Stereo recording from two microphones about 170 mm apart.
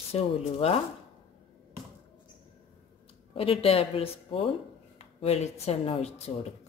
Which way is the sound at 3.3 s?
35° left (ahead or behind).